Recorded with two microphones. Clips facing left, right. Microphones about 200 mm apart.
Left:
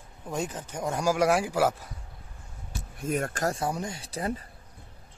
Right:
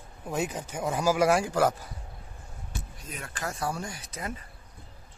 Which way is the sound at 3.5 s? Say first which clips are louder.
Left 2 dB; 20° left (ahead or behind).